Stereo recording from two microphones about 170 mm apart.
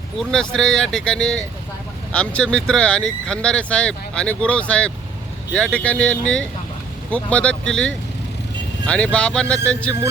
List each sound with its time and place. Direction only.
0.2 s speech: 5° left (ahead or behind)
9.1 s speech: 5° left (ahead or behind)